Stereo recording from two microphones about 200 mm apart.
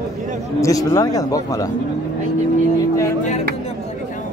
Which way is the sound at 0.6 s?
15° left (ahead or behind).